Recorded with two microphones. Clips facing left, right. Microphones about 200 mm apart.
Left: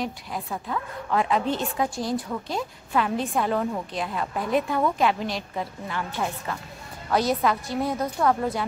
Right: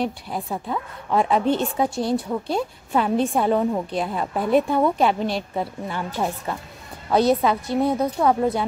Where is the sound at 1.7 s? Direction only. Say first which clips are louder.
Right 4 dB; 25° right (ahead or behind).